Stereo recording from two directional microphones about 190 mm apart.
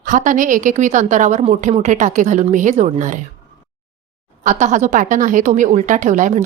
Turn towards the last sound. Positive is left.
turn(degrees=-40)  # may be behind; listen again after turning